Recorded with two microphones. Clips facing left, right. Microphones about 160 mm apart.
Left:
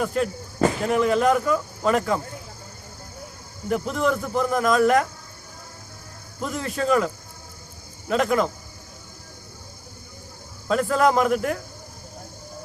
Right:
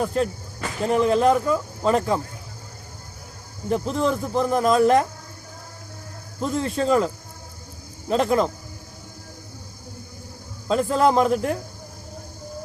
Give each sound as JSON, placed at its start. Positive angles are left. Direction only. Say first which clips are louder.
{"t": 0.0, "sound": "speech", "louder": "right 1 dB", "side_deg": -30}
{"t": 3.7, "sound": "speech", "louder": "right 1 dB", "side_deg": -30}
{"t": 6.4, "sound": "speech", "louder": "right 3 dB", "side_deg": -30}
{"t": 10.7, "sound": "speech", "louder": "right 1 dB", "side_deg": -30}